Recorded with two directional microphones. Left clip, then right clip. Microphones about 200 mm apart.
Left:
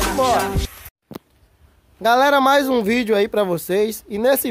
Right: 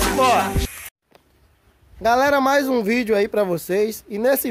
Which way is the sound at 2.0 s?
Centre (ahead or behind).